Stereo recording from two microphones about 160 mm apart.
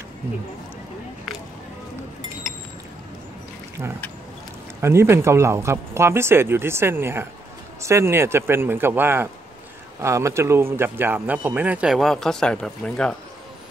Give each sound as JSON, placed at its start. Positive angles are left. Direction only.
{"t": 4.8, "sound": "speech", "side_deg": -15}